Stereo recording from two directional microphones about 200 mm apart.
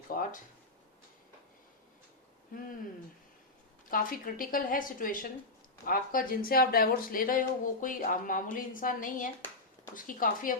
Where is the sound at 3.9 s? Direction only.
45° left (ahead or behind).